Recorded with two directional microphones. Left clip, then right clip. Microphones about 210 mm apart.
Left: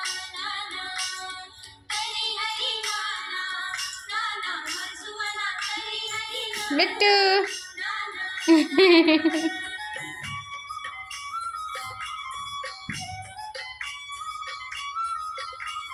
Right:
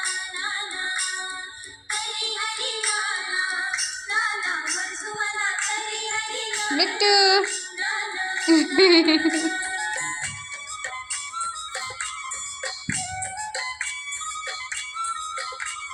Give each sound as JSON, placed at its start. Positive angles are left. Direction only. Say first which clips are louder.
{"t": 0.0, "sound": "music", "louder": "right 4 dB", "side_deg": -35}
{"t": 6.7, "sound": "speech", "louder": "right 1 dB", "side_deg": 20}
{"t": 7.4, "sound": "music", "louder": "right 4 dB", "side_deg": -50}
{"t": 8.4, "sound": "speech", "louder": "even", "side_deg": 20}
{"t": 9.3, "sound": "music", "louder": "right 3 dB", "side_deg": -50}